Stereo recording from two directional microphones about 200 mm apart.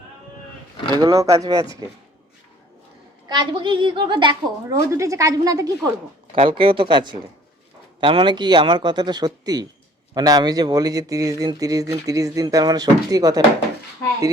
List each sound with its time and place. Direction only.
0.9 s speech: 15° right (ahead or behind)
3.2 s a woman's voice: 25° right (ahead or behind)